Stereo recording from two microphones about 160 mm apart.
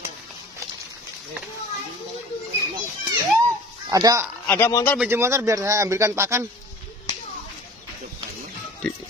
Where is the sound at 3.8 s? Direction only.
25° right (ahead or behind).